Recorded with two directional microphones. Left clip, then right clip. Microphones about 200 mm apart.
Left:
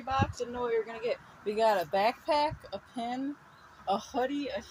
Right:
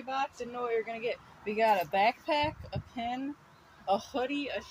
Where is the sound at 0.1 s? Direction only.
35° left (ahead or behind).